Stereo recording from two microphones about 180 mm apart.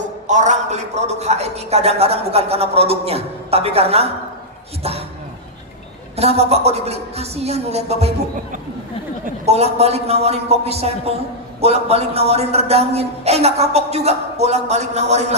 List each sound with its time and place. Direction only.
0.3 s a man's voice: 40° right (ahead or behind)
6.1 s a man's voice: 35° right (ahead or behind)
9.2 s a man's voice: 35° right (ahead or behind)